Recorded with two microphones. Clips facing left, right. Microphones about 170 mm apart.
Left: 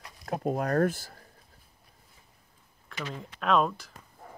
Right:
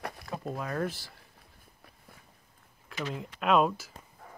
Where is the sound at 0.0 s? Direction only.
60° right (ahead or behind).